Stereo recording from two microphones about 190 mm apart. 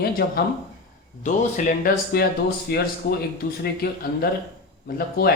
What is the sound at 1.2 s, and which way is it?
Speech, 45° left (ahead or behind).